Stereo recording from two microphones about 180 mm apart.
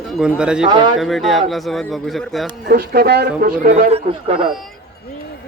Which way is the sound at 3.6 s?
45° right (ahead or behind).